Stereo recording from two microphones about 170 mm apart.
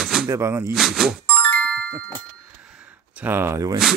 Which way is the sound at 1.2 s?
5° left (ahead or behind).